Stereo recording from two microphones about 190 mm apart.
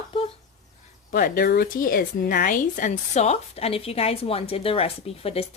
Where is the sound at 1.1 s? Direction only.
50° left (ahead or behind).